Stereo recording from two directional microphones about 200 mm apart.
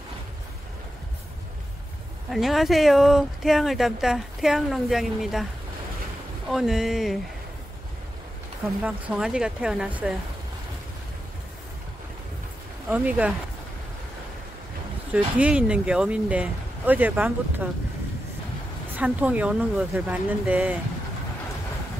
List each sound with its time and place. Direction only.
2.3 s speech: centre (ahead or behind)
8.8 s speech: 5° right (ahead or behind)
12.9 s speech: 5° right (ahead or behind)
15.1 s speech: 5° right (ahead or behind)
18.9 s speech: 10° right (ahead or behind)